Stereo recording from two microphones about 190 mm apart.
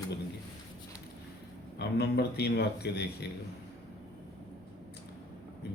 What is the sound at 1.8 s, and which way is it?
A man's voice, 60° left (ahead or behind).